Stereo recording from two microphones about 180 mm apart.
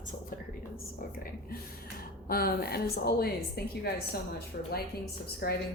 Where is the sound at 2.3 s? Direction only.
55° left (ahead or behind).